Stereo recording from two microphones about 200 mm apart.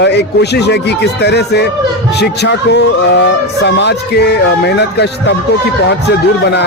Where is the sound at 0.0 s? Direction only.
55° left (ahead or behind).